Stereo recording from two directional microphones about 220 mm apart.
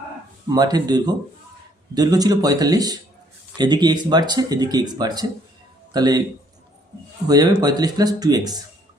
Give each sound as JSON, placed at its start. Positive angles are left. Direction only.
{"t": 0.4, "sound": "speech", "side_deg": -20}
{"t": 7.3, "sound": "speech", "side_deg": -15}